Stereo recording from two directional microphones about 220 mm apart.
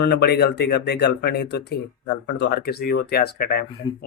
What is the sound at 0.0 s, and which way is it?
Speech, 50° left (ahead or behind).